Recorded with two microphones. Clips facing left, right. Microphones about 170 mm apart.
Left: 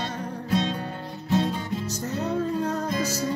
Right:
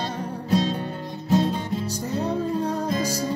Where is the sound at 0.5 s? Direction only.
35° right (ahead or behind).